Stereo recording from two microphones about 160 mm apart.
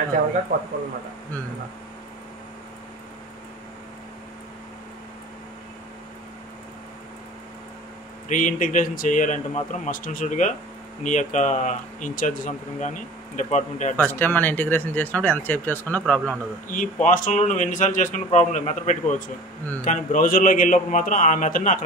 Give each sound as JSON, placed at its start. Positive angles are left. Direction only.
{"t": 0.5, "sound": "speech", "side_deg": -50}
{"t": 8.3, "sound": "a man's voice", "side_deg": 55}
{"t": 13.9, "sound": "speech", "side_deg": 10}
{"t": 16.6, "sound": "a man's voice", "side_deg": 55}